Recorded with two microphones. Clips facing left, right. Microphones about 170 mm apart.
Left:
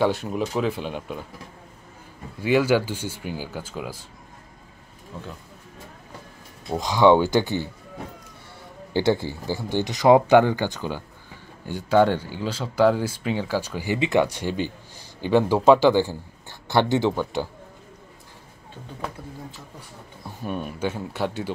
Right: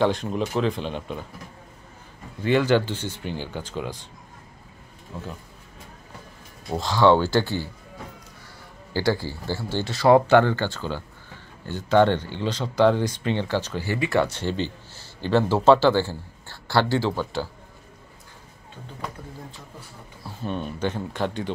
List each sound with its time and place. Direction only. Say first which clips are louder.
0.0 s speech: even; 5° left (ahead or behind)
2.4 s speech: even; 10° left (ahead or behind)
6.8 s speech: left 2 dB; 15° left (ahead or behind)
8.9 s speech: left 2 dB; 20° left (ahead or behind)
20.2 s speech: even; 10° left (ahead or behind)